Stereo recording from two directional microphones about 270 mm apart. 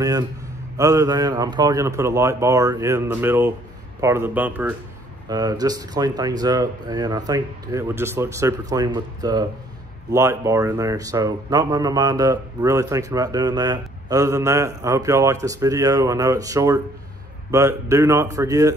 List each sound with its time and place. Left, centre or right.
0.7 s speech: centre